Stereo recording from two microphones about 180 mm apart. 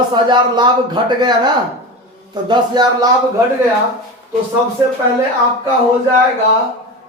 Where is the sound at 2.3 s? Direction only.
25° right (ahead or behind).